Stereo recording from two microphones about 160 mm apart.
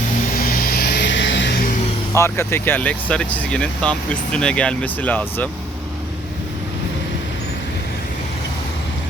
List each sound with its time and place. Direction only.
0.3 s vehicle: 65° left (ahead or behind); by 1.7 s 80° left
2.1 s speech: 15° left (ahead or behind)